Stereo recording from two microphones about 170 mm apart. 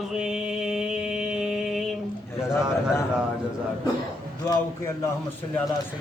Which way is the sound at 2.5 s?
15° left (ahead or behind).